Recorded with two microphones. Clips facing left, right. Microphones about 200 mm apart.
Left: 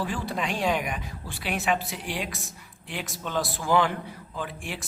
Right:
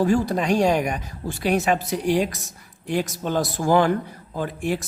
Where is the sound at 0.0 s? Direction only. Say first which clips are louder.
Right 10 dB; 45° right (ahead or behind).